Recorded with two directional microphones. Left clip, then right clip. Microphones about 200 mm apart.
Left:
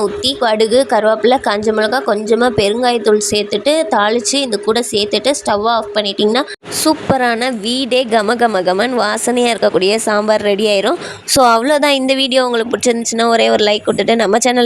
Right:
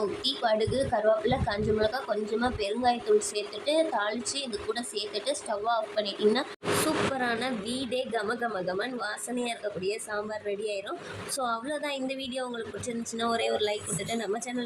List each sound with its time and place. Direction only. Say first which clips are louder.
0.3 s a woman's voice: left 14 dB; 50° left (ahead or behind)